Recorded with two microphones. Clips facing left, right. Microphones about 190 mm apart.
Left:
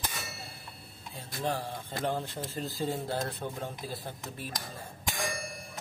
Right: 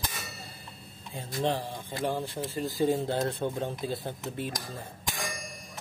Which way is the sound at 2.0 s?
10° right (ahead or behind).